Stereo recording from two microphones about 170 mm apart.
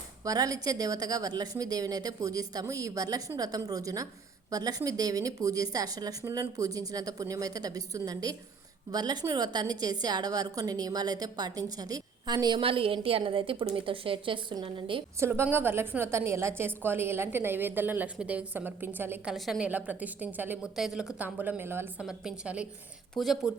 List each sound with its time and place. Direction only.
0.3 s a woman's voice: 20° right (ahead or behind)
15.2 s a woman's voice: 15° right (ahead or behind)